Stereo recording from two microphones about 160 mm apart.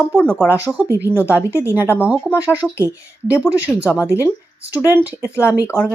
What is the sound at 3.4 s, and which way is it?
Speech, 10° right (ahead or behind).